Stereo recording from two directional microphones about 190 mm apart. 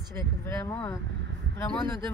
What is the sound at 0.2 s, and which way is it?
Speech, 10° left (ahead or behind).